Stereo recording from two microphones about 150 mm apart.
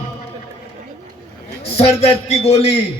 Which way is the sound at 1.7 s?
45° left (ahead or behind).